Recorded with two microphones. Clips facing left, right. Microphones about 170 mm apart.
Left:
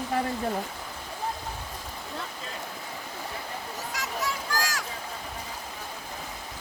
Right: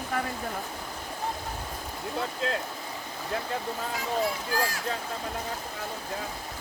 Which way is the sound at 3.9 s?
90° left.